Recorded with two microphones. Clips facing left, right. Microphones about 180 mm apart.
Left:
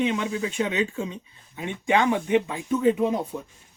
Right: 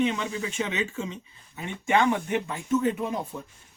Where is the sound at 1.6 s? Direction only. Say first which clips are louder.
Left 1 dB; 15° left (ahead or behind).